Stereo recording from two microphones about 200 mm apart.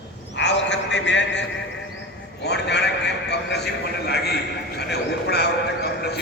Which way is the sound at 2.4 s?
55° left (ahead or behind).